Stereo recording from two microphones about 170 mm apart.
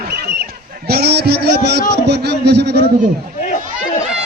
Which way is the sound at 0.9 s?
70° right (ahead or behind).